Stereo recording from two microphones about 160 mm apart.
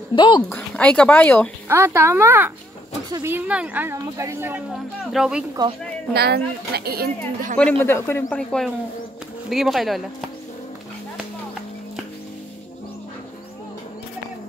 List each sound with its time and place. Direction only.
0.1 s speech: 30° left (ahead or behind)
0.5 s speech: 10° left (ahead or behind)
1.7 s speech: 15° right (ahead or behind)
4.7 s speech: 5° right (ahead or behind)
6.1 s speech: 85° right
7.8 s speech: 15° left (ahead or behind)
8.4 s speech: 5° left (ahead or behind)